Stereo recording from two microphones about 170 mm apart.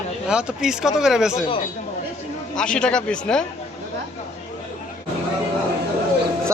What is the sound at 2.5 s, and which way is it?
Speech, 5° left (ahead or behind).